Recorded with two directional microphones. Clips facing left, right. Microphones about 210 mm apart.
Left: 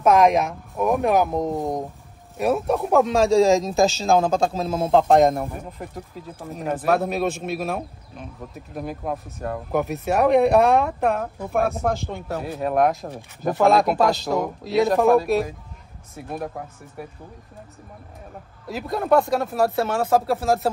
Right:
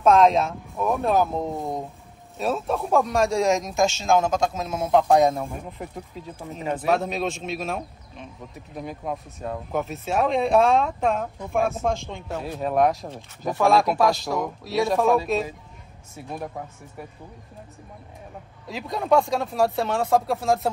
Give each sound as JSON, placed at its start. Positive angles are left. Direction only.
{"t": 0.0, "sound": "a man's voice", "side_deg": 15}
{"t": 5.5, "sound": "speech", "side_deg": 0}
{"t": 9.8, "sound": "speech", "side_deg": 65}
{"t": 11.0, "sound": "speech", "side_deg": 5}
{"t": 16.5, "sound": "speech", "side_deg": 0}
{"t": 18.7, "sound": "speech", "side_deg": 0}